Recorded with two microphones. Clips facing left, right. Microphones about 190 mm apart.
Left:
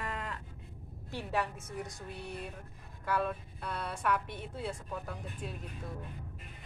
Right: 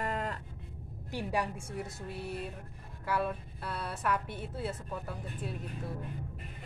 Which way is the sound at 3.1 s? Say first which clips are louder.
Even; 5° right (ahead or behind).